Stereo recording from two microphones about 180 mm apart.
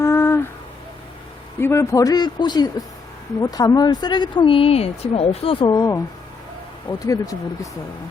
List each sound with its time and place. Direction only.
0.0 s a sound: 15° left (ahead or behind)
1.5 s speech: 15° left (ahead or behind)
7.0 s speech: 20° left (ahead or behind)